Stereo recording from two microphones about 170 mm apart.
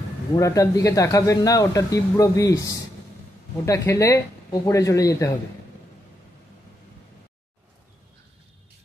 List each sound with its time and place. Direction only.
0.4 s speech: 20° left (ahead or behind)